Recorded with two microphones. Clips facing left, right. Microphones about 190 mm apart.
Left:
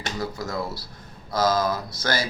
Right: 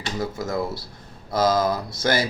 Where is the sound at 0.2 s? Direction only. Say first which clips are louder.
Right 4 dB; 25° right (ahead or behind).